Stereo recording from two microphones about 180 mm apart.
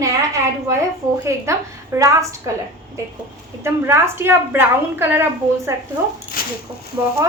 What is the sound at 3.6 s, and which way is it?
A woman's voice, 15° right (ahead or behind).